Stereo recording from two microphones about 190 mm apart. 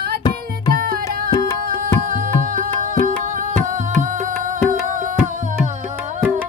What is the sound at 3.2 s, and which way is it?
Music, 45° right (ahead or behind).